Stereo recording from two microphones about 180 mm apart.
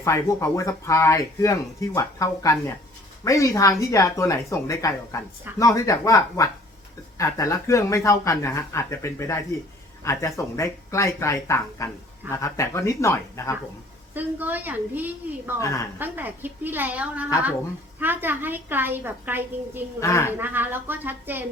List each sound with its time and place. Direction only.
0.0 s speech: 15° left (ahead or behind)
14.1 s a woman's voice: 10° right (ahead or behind)
15.6 s speech: 15° left (ahead or behind)
16.0 s a woman's voice: 10° right (ahead or behind)
20.0 s speech: 15° left (ahead or behind)
20.4 s a woman's voice: 10° right (ahead or behind)